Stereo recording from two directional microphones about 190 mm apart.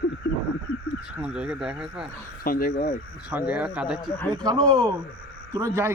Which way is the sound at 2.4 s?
50° left (ahead or behind).